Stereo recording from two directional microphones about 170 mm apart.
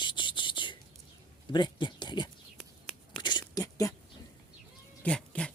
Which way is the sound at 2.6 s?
Centre (ahead or behind).